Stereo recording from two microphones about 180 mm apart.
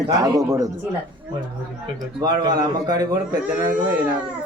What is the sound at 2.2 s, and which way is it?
Speech, 20° right (ahead or behind).